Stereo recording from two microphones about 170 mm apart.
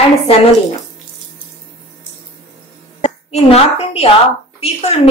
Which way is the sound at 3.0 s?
40° left (ahead or behind).